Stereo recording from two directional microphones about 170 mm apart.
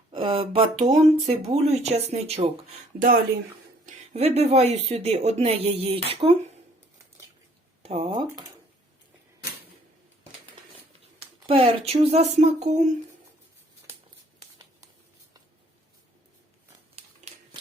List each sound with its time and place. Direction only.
0.1 s speech: 30° right (ahead or behind)
3.0 s speech: 55° right (ahead or behind)
3.8 s speech: 40° right (ahead or behind)
7.8 s speech: 35° right (ahead or behind)
11.2 s speech: 35° right (ahead or behind)
16.9 s a sound: 35° right (ahead or behind)